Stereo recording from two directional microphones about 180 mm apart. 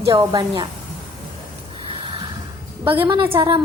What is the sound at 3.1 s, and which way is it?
Speech, 30° right (ahead or behind).